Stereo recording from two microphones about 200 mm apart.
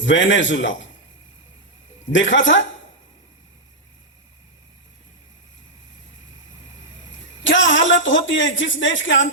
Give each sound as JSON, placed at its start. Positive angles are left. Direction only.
{"t": 0.0, "sound": "a man's voice", "side_deg": 70}
{"t": 2.1, "sound": "a man's voice", "side_deg": 70}
{"t": 7.4, "sound": "a man's voice", "side_deg": 70}